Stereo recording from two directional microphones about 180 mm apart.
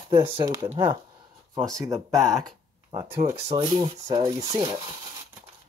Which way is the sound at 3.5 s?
25° right (ahead or behind).